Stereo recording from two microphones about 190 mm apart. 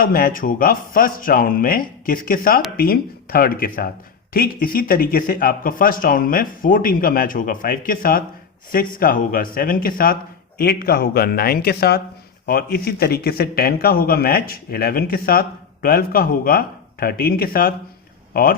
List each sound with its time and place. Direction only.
0.0 s a man's voice: 50° left (ahead or behind)